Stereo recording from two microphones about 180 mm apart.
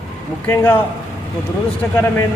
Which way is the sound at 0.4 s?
10° left (ahead or behind).